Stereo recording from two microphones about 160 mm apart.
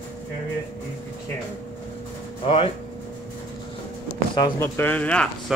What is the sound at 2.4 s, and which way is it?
Speech, 35° left (ahead or behind).